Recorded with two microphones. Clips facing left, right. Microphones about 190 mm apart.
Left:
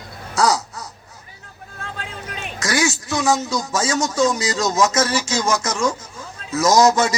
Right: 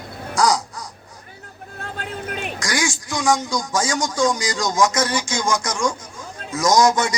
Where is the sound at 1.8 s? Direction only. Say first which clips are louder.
Right 3 dB; 50° right (ahead or behind).